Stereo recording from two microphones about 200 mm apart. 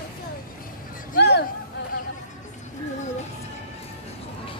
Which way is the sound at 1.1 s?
55° left (ahead or behind).